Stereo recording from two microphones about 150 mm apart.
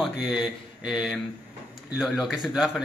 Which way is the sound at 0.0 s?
5° right (ahead or behind).